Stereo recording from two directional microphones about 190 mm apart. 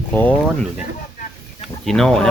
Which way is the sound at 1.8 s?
Centre (ahead or behind).